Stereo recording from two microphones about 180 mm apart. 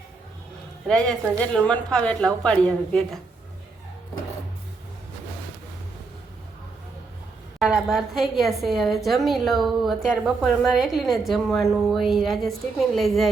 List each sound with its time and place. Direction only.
0.9 s a woman's voice: 5° left (ahead or behind)
7.6 s a woman's voice: 5° right (ahead or behind)